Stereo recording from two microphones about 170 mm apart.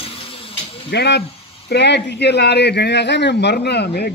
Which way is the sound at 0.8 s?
80° left.